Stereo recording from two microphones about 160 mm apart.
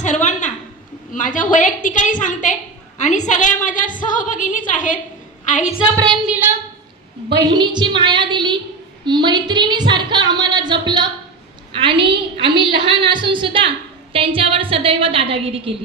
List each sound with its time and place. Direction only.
0.0 s a sound: 50° left (ahead or behind)
1.1 s a woman's voice: 55° left (ahead or behind)
6.1 s a woman's voice: 5° right (ahead or behind)
7.3 s a woman's voice: 30° right (ahead or behind)